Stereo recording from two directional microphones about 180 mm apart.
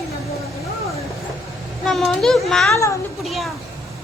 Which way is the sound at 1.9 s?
Centre (ahead or behind).